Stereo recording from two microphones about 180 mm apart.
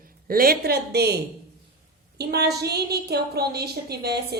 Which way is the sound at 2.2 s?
65° right (ahead or behind).